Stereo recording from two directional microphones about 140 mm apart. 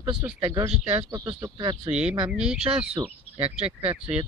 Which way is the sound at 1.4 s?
30° right (ahead or behind).